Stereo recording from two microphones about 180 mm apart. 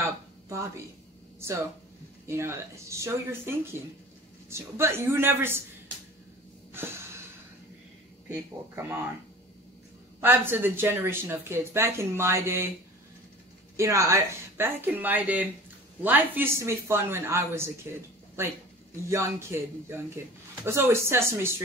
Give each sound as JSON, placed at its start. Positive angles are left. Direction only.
{"t": 0.0, "sound": "a sound", "side_deg": -15}
{"t": 2.2, "sound": "speech", "side_deg": -15}
{"t": 6.7, "sound": "snort", "side_deg": -15}
{"t": 8.7, "sound": "speech", "side_deg": -10}
{"t": 10.2, "sound": "speech", "side_deg": -10}
{"t": 13.7, "sound": "speech", "side_deg": -15}
{"t": 19.0, "sound": "speech", "side_deg": -15}